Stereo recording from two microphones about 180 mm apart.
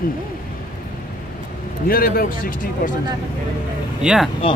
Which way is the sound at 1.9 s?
55° left (ahead or behind).